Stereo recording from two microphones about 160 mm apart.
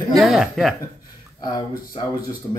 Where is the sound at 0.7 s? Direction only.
25° left (ahead or behind).